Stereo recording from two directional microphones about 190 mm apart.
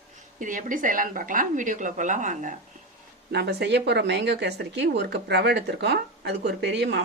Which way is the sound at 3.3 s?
60° right (ahead or behind).